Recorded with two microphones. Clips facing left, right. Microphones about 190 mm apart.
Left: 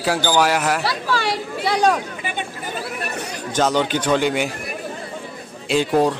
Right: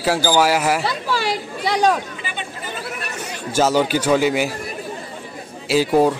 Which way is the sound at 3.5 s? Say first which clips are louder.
Right 2 dB; 10° right (ahead or behind).